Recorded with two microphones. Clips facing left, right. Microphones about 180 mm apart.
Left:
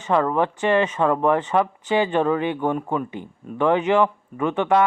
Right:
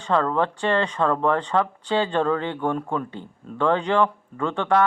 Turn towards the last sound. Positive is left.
turn(degrees=15)  # may be behind; listen again after turning